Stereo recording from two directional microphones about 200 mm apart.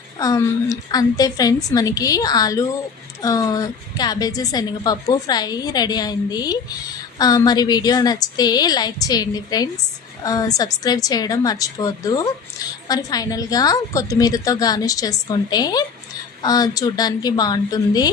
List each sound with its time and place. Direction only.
0.2 s a woman's voice: 15° left (ahead or behind)